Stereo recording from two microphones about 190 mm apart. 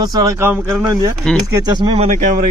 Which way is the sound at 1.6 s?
25° right (ahead or behind).